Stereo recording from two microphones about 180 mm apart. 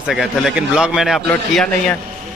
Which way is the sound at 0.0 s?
Centre (ahead or behind).